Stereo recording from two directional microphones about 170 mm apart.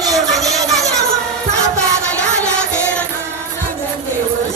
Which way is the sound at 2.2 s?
5° left (ahead or behind).